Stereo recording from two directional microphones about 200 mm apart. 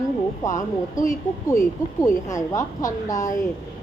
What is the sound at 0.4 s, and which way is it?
Speech, 15° left (ahead or behind).